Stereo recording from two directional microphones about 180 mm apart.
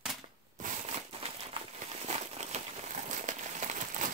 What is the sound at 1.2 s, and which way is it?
Crumpling, 35° right (ahead or behind).